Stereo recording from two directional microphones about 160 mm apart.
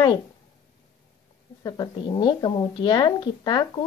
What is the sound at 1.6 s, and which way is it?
A woman's voice, 25° left (ahead or behind).